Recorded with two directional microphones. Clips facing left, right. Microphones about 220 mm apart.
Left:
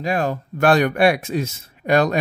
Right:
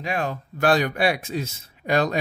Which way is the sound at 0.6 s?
60° left (ahead or behind).